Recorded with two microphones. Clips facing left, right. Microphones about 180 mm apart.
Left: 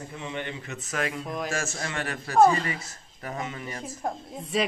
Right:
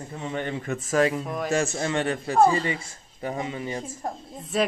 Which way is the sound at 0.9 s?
30° right (ahead or behind).